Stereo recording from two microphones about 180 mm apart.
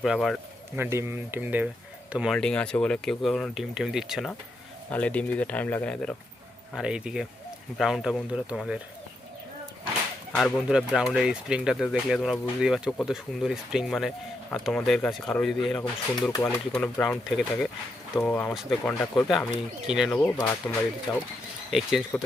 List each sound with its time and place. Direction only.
0.0 s speech: centre (ahead or behind)
0.8 s speech: 15° right (ahead or behind)
10.3 s speech: centre (ahead or behind)
20.1 s speech: 10° left (ahead or behind)
21.7 s speech: 5° right (ahead or behind)